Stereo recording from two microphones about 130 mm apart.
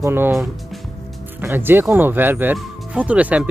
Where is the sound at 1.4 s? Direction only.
15° right (ahead or behind).